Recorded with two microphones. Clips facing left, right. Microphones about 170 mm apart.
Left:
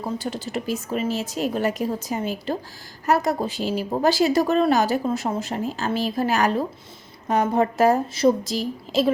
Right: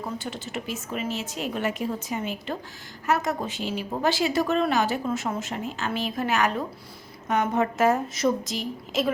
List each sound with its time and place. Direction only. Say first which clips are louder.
0.2 s a woman's voice: left 5 dB; 35° left (ahead or behind)